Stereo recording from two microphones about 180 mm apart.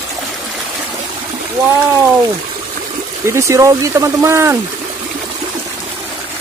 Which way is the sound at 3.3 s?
15° right (ahead or behind).